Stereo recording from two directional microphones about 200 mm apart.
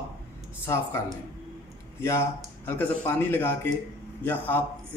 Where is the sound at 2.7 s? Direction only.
10° left (ahead or behind).